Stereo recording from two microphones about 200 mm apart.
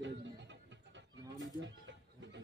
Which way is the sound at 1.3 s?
70° right (ahead or behind).